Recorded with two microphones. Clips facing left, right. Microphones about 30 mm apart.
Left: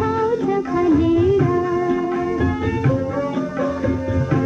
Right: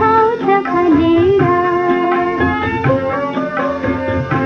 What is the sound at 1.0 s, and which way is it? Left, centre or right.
Music, right.